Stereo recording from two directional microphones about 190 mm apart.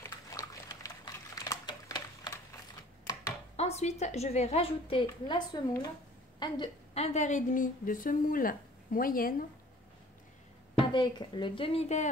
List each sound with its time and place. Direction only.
0.0 s typing: 15° left (ahead or behind)
3.5 s a woman's voice: 35° left (ahead or behind)
10.9 s speech: 25° left (ahead or behind)